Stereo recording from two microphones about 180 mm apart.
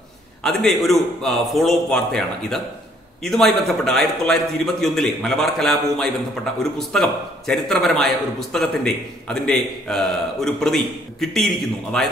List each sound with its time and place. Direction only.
0.4 s a man's voice: centre (ahead or behind)